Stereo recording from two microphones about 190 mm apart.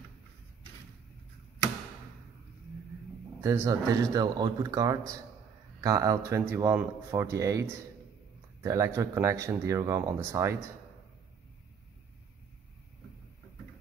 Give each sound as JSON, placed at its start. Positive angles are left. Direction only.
{"t": 3.3, "sound": "speech", "side_deg": -15}
{"t": 8.6, "sound": "speech", "side_deg": -15}